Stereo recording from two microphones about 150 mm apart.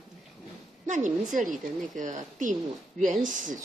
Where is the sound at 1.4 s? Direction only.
Centre (ahead or behind).